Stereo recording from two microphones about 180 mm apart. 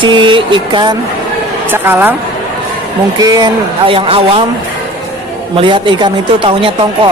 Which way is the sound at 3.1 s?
20° right (ahead or behind).